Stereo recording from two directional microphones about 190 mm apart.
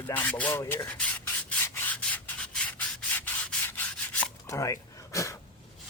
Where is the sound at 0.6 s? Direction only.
20° left (ahead or behind).